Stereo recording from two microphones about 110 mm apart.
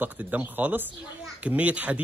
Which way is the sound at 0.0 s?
15° right (ahead or behind).